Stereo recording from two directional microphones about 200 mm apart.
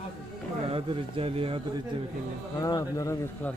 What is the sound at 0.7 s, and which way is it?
Speech, 30° right (ahead or behind).